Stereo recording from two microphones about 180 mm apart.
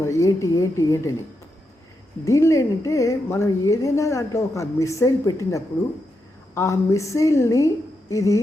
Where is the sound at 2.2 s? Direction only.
15° left (ahead or behind).